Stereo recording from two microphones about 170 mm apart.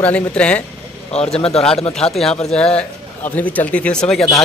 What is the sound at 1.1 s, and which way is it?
Speech, 35° left (ahead or behind).